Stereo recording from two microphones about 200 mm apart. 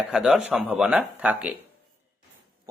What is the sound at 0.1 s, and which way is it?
Speech, 5° right (ahead or behind).